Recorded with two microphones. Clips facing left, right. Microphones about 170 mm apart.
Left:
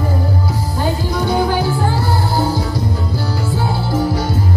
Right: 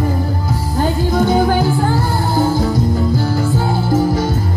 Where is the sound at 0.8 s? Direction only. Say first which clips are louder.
Right 4 dB; 50° right (ahead or behind).